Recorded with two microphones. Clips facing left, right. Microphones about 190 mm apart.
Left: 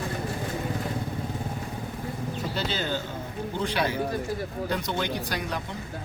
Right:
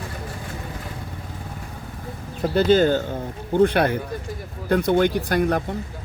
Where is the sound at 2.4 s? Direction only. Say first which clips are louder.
Right 16 dB; 50° right (ahead or behind).